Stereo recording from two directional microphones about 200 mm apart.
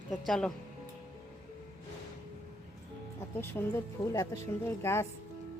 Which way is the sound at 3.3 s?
15° left (ahead or behind).